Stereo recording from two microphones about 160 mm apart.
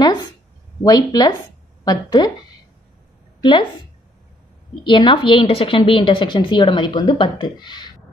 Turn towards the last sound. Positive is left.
turn(degrees=25)  # may be behind; listen again after turning